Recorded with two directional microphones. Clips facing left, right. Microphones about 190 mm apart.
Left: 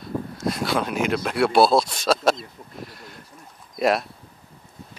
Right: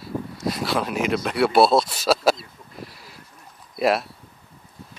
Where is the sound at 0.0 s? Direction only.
Centre (ahead or behind).